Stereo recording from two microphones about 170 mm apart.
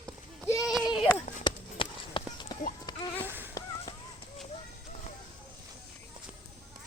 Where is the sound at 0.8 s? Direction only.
30° left (ahead or behind).